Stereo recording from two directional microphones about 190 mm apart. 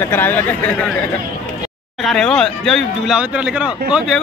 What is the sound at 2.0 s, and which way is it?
Speech, 5° left (ahead or behind).